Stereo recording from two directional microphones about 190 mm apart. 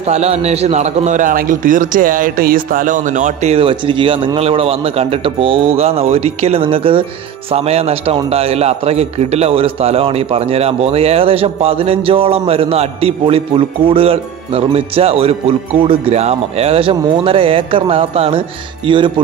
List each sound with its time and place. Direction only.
0.1 s a man's voice: 35° right (ahead or behind)
3.5 s a man's voice: 30° right (ahead or behind)